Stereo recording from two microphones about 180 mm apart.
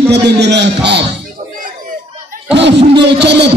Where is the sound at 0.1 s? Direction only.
70° right (ahead or behind).